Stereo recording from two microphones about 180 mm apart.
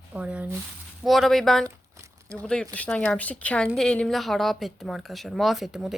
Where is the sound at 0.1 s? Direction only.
5° right (ahead or behind).